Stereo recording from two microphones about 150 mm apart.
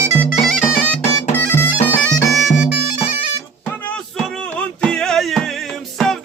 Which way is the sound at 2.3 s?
Centre (ahead or behind).